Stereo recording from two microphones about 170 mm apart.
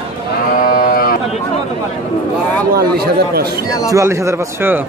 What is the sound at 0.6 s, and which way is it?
Sheep, 55° left (ahead or behind).